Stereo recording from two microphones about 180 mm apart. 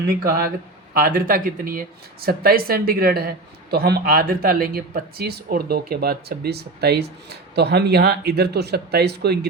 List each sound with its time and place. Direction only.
0.1 s speech: 55° right (ahead or behind)